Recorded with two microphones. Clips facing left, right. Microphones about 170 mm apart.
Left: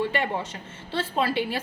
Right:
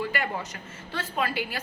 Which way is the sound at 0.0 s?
30° left (ahead or behind).